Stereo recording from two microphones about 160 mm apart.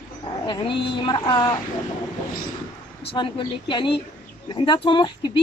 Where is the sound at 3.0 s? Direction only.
30° left (ahead or behind).